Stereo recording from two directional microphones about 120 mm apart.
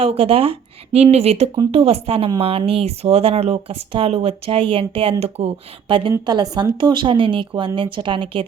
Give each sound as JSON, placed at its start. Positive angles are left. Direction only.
{"t": 0.0, "sound": "speech", "side_deg": -55}